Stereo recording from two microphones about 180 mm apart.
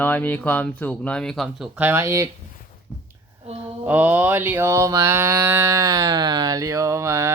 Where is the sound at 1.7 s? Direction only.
10° right (ahead or behind).